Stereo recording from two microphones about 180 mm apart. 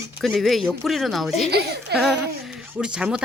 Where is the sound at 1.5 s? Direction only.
65° right (ahead or behind).